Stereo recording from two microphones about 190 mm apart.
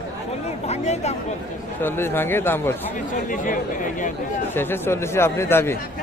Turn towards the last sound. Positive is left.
turn(degrees=15)  # may be behind; listen again after turning